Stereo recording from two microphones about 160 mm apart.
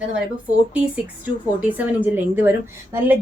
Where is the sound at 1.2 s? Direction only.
10° right (ahead or behind).